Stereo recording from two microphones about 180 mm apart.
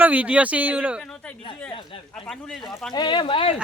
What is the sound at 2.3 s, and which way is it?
Speech, centre (ahead or behind).